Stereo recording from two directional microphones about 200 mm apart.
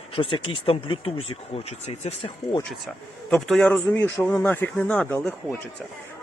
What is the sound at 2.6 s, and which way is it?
Speech, centre (ahead or behind).